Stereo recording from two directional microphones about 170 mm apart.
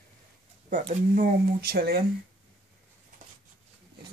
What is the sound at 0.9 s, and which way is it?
Speech, 50° right (ahead or behind).